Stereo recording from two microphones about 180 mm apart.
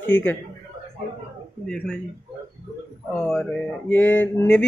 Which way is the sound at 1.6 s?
5° left (ahead or behind).